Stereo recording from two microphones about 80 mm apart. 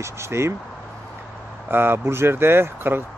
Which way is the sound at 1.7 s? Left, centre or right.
Right.